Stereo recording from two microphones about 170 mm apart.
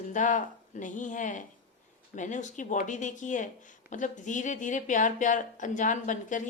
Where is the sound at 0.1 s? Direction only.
50° left (ahead or behind).